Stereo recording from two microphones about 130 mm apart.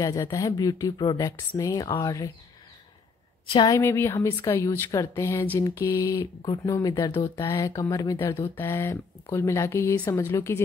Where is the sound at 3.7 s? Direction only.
20° left (ahead or behind).